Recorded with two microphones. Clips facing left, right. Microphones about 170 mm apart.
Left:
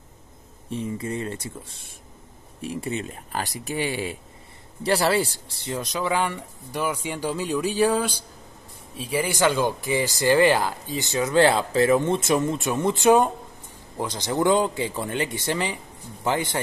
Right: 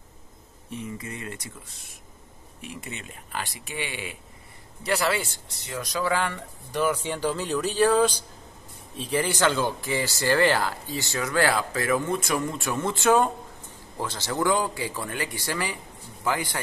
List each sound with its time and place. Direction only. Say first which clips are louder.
0.7 s speech: left 6 dB; 30° left (ahead or behind)